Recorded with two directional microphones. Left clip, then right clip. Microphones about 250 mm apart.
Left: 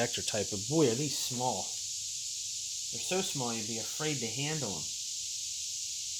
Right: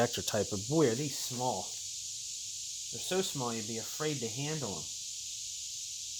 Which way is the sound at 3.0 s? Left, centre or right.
Centre.